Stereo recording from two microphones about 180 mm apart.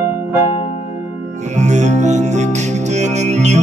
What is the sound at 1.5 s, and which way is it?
Music, 40° right (ahead or behind).